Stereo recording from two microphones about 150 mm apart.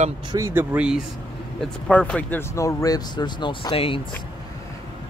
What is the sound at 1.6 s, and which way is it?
Speech, 10° left (ahead or behind).